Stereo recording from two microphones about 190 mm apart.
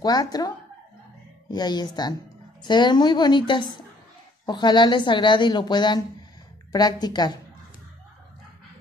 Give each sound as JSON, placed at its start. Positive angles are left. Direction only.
{"t": 0.0, "sound": "a woman's voice", "side_deg": 20}
{"t": 1.5, "sound": "a woman's voice", "side_deg": 20}